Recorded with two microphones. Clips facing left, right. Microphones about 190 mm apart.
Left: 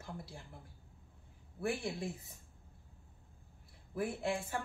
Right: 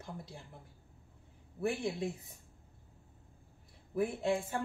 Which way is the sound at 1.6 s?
20° right (ahead or behind).